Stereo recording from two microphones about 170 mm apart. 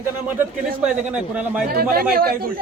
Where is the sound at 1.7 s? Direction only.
60° right (ahead or behind).